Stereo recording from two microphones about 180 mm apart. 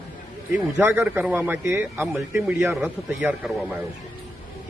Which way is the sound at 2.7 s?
Centre (ahead or behind).